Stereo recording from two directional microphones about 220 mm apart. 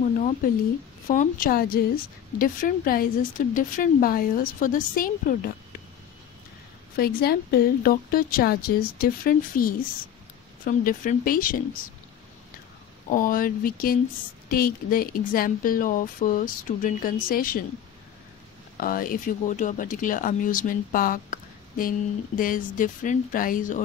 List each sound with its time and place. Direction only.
1.0 s speech: 35° left (ahead or behind)
7.0 s speech: 45° left (ahead or behind)
13.1 s speech: 40° left (ahead or behind)
18.8 s speech: 40° left (ahead or behind)